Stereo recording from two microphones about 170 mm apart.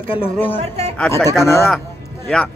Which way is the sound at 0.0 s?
35° left (ahead or behind).